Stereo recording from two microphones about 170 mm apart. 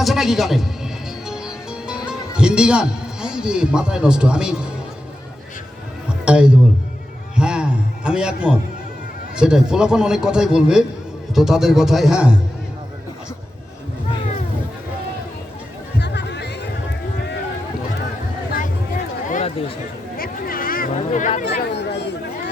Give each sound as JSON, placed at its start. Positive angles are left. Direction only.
{"t": 0.0, "sound": "a man's voice", "side_deg": 0}
{"t": 1.3, "sound": "music", "side_deg": -5}
{"t": 6.2, "sound": "speech", "side_deg": -5}
{"t": 7.3, "sound": "a sound", "side_deg": -5}
{"t": 9.3, "sound": "a man's voice", "side_deg": -5}
{"t": 16.0, "sound": "music", "side_deg": 85}
{"t": 19.3, "sound": "a sound", "side_deg": 40}
{"t": 20.1, "sound": "a sound", "side_deg": 60}
{"t": 20.9, "sound": "speech", "side_deg": 45}
{"t": 21.7, "sound": "chatter", "side_deg": 90}